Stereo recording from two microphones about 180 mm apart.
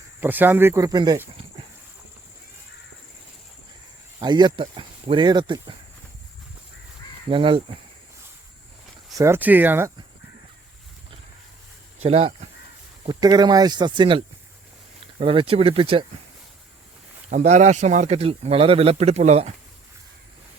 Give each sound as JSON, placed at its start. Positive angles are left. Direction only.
{"t": 0.2, "sound": "speech", "side_deg": -10}
{"t": 4.2, "sound": "speech", "side_deg": -25}
{"t": 7.3, "sound": "speech", "side_deg": -30}
{"t": 9.1, "sound": "speech", "side_deg": -15}
{"t": 12.0, "sound": "speech", "side_deg": -35}
{"t": 13.1, "sound": "speech", "side_deg": -20}
{"t": 17.2, "sound": "speech", "side_deg": -40}